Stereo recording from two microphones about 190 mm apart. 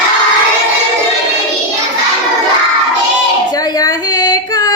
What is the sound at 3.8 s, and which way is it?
Carnatic music, 20° left (ahead or behind).